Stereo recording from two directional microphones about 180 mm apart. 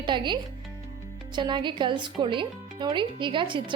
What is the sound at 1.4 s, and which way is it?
Speech, 25° right (ahead or behind).